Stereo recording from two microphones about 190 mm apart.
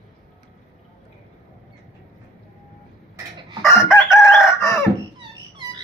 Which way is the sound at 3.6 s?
15° left (ahead or behind).